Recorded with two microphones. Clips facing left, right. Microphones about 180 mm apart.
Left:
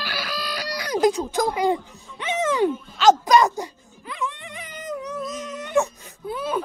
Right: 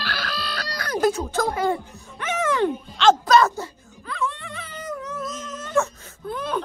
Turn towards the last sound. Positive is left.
turn(degrees=10)  # may be behind; listen again after turning